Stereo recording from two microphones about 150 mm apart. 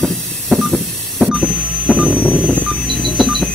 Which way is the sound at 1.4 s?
10° left (ahead or behind).